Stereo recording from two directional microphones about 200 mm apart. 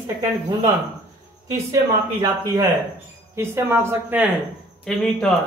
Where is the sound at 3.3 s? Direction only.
10° right (ahead or behind).